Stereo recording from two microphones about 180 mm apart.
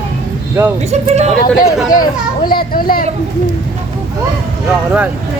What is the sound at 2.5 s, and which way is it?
Speech, 55° left (ahead or behind).